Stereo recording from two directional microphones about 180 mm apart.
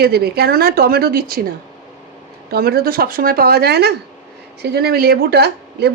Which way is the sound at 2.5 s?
60° right (ahead or behind).